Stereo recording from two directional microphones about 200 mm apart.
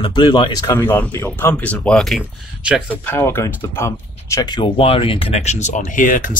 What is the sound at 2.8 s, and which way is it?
Speech, 10° left (ahead or behind).